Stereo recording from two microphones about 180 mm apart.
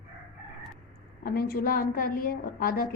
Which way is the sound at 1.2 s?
60° left (ahead or behind).